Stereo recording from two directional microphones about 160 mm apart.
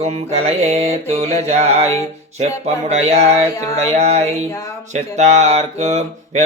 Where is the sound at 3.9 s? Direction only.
40° right (ahead or behind).